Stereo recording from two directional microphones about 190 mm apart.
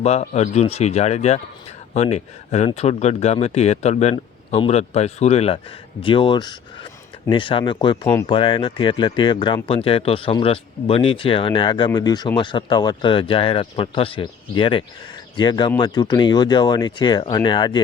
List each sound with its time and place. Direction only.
0.0 s speech: 35° left (ahead or behind)